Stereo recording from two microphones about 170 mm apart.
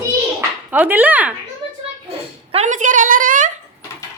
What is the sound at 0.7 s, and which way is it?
Speech, 10° right (ahead or behind).